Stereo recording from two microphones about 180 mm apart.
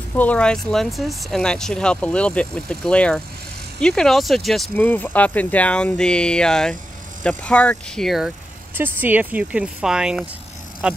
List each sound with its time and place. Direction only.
0.1 s speech: 10° left (ahead or behind)
8.7 s speech: 10° right (ahead or behind)